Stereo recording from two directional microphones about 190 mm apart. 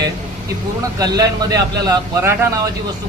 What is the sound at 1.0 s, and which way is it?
A man's voice, 20° right (ahead or behind).